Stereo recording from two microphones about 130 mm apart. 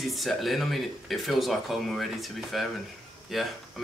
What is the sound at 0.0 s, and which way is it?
Speech, centre (ahead or behind).